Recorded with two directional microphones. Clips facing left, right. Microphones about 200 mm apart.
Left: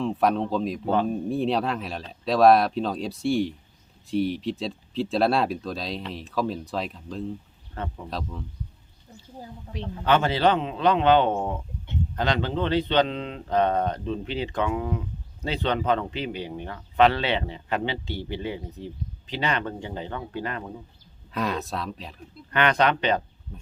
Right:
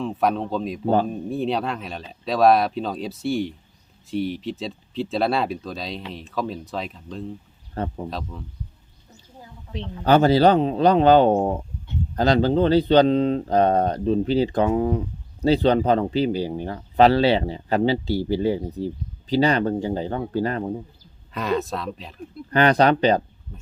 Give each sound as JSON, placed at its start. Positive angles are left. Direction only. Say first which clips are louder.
{"t": 0.0, "sound": "speech", "louder": "even", "side_deg": 0}
{"t": 7.8, "sound": "speech", "louder": "right 6 dB", "side_deg": -35}
{"t": 8.1, "sound": "speech", "louder": "right 1 dB", "side_deg": 0}
{"t": 10.0, "sound": "speech", "louder": "right 6 dB", "side_deg": -40}
{"t": 21.3, "sound": "speech", "louder": "right 4 dB", "side_deg": 0}
{"t": 22.5, "sound": "speech", "louder": "right 5 dB", "side_deg": -35}